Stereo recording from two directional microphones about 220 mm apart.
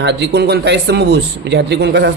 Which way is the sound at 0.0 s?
50° right (ahead or behind).